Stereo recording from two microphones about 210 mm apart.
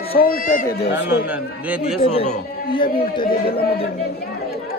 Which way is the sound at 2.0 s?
25° left (ahead or behind).